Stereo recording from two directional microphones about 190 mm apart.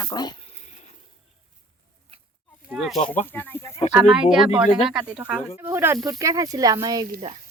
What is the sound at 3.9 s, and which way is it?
Speech, 5° right (ahead or behind).